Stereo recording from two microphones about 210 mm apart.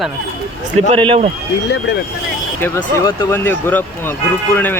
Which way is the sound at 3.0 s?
15° left (ahead or behind).